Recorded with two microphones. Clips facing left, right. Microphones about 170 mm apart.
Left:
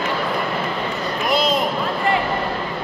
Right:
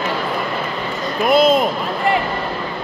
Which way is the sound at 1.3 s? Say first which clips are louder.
Right 7 dB; 50° right (ahead or behind).